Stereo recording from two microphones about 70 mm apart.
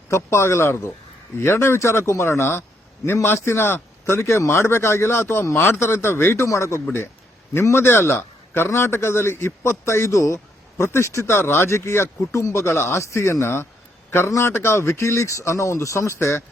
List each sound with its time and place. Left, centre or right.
0.1 s a man's voice: left